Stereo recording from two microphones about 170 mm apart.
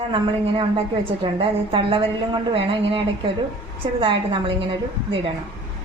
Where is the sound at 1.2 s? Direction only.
30° right (ahead or behind).